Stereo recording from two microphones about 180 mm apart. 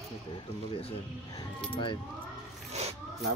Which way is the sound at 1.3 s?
25° left (ahead or behind).